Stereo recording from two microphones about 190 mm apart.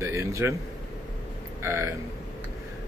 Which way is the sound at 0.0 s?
15° right (ahead or behind).